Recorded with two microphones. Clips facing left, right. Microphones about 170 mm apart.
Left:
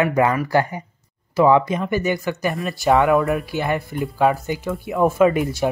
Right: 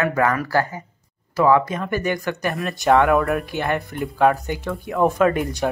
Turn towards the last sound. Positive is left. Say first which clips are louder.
# left 2 dB
turn(degrees=5)  # may be behind; listen again after turning